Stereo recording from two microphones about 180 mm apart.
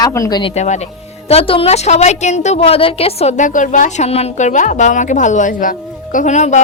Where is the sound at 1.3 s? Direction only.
30° left (ahead or behind).